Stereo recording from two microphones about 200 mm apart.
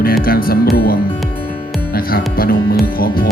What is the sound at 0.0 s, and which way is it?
Music, 50° left (ahead or behind).